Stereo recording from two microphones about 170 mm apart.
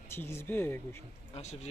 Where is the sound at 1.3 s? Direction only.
40° left (ahead or behind).